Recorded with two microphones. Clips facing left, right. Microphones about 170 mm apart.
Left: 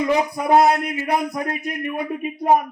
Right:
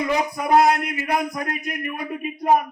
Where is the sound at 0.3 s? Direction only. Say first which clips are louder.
Left 1 dB; 25° left (ahead or behind).